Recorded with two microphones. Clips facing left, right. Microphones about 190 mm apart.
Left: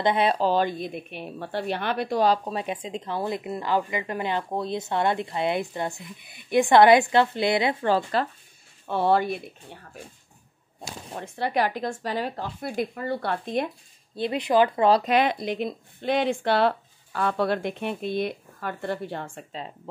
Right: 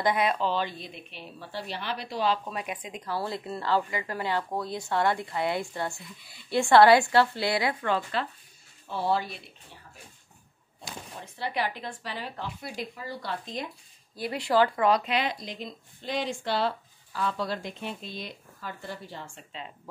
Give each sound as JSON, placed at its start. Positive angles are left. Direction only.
{"t": 0.0, "sound": "a woman's voice", "side_deg": 30}
{"t": 7.9, "sound": "speech", "side_deg": 40}
{"t": 8.8, "sound": "speech", "side_deg": 60}
{"t": 11.1, "sound": "speech", "side_deg": 50}
{"t": 14.1, "sound": "a woman's voice", "side_deg": 20}
{"t": 15.0, "sound": "speech", "side_deg": 55}